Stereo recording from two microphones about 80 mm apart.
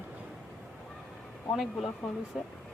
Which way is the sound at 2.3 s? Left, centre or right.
Centre.